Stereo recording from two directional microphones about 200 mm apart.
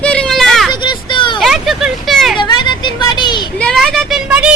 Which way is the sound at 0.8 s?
25° left (ahead or behind).